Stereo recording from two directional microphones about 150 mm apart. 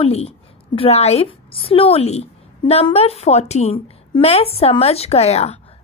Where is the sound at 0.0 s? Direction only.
40° left (ahead or behind).